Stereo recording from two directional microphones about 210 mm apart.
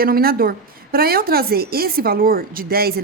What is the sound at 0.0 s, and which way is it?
A woman's voice, 45° right (ahead or behind).